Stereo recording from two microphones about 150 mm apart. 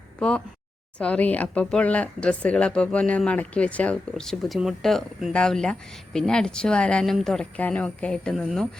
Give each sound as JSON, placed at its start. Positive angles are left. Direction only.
{"t": 0.2, "sound": "speech", "side_deg": 5}